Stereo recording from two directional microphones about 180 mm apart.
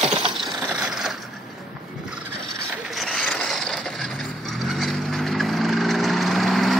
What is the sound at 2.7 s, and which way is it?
Ratchet, centre (ahead or behind).